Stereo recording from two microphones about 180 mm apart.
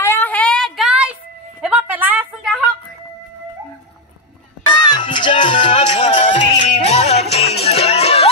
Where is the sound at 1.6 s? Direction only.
10° right (ahead or behind).